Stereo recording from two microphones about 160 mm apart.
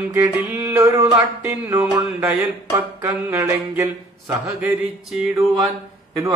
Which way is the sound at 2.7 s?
20° right (ahead or behind).